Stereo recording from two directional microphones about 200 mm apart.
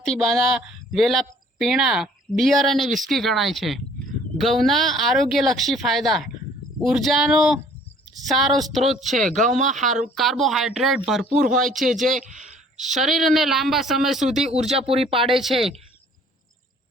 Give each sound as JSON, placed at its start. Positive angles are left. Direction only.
{"t": 0.0, "sound": "a woman's voice", "side_deg": 0}
{"t": 9.6, "sound": "speech", "side_deg": -40}
{"t": 10.2, "sound": "speech", "side_deg": 0}
{"t": 11.4, "sound": "speech", "side_deg": -40}
{"t": 11.7, "sound": "speech", "side_deg": 0}
{"t": 12.0, "sound": "speech", "side_deg": -40}
{"t": 12.7, "sound": "speech", "side_deg": 0}
{"t": 14.7, "sound": "speech", "side_deg": -30}